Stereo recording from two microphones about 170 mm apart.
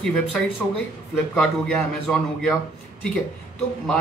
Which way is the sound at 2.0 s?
Centre (ahead or behind).